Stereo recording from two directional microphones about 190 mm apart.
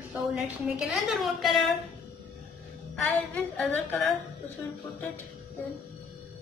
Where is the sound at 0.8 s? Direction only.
Centre (ahead or behind).